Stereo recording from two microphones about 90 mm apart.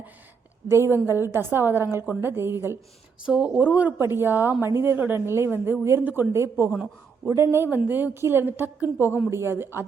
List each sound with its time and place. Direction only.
0.7 s a woman's voice: 25° right (ahead or behind)
3.2 s a woman's voice: 15° right (ahead or behind)